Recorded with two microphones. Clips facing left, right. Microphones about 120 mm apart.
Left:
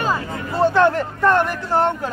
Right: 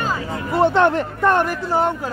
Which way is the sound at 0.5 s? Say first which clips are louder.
Even; 20° right (ahead or behind).